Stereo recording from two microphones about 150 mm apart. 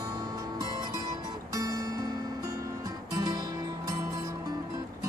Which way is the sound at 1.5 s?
25° right (ahead or behind).